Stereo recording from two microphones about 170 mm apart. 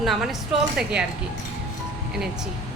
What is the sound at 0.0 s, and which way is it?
A woman's voice, centre (ahead or behind).